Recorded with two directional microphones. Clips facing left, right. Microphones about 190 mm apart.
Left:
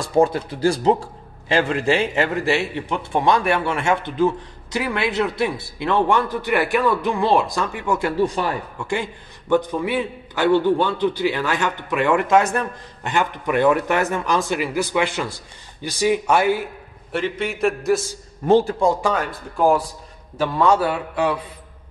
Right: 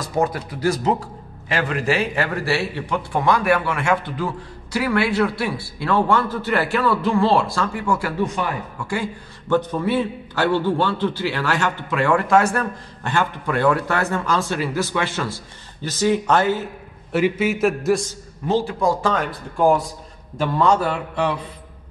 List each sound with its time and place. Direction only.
0.0 s a man's voice: 30° left (ahead or behind)
8.2 s a man's voice: 30° left (ahead or behind); by 16.6 s 10° left (ahead or behind)
17.1 s a man's voice: 5° right (ahead or behind)
18.4 s a man's voice: 40° left (ahead or behind)
18.8 s speech: 20° left (ahead or behind)
19.1 s a man's voice: 5° left (ahead or behind)